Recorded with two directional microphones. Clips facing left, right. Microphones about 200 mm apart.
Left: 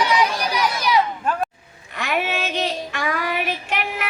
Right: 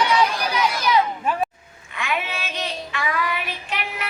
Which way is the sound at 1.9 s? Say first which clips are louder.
Left 4 dB; 40° left (ahead or behind).